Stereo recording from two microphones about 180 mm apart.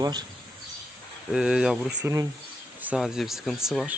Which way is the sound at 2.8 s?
5° right (ahead or behind).